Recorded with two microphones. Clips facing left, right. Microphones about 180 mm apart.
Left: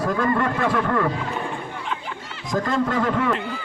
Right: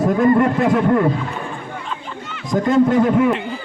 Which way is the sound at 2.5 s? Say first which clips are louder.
Right 8 dB; 20° right (ahead or behind).